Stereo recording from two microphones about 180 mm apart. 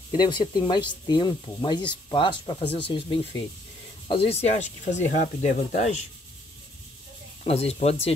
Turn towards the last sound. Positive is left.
turn(degrees=35)  # may be behind; listen again after turning